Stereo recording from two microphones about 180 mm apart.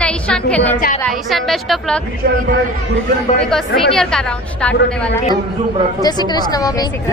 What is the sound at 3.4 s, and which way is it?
A woman's voice, centre (ahead or behind).